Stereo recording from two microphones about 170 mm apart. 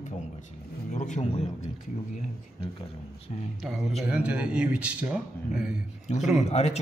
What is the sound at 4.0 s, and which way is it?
Speech, 5° right (ahead or behind).